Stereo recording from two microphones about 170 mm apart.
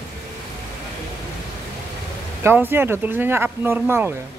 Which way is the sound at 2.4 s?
10° right (ahead or behind).